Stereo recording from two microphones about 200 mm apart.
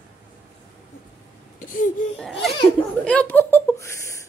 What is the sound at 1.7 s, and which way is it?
Speech, 40° left (ahead or behind).